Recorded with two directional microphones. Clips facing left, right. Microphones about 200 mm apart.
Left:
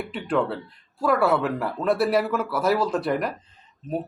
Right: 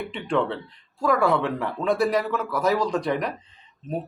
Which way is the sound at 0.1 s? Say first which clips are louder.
Left 1 dB; 5° left (ahead or behind).